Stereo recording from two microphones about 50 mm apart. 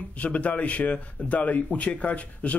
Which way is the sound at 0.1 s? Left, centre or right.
Left.